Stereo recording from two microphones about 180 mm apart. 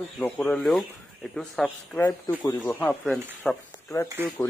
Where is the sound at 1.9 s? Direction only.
15° left (ahead or behind).